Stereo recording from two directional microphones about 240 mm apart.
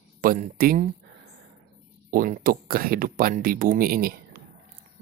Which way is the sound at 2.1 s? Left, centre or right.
Right.